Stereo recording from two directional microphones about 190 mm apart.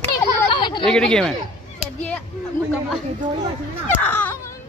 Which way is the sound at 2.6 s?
10° left (ahead or behind).